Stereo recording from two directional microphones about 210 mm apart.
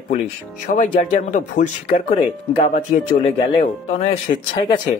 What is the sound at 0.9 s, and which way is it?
Speech, 35° left (ahead or behind).